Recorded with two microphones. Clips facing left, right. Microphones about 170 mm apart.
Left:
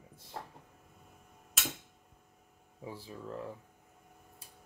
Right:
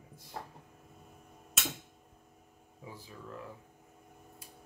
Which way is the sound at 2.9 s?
30° left (ahead or behind).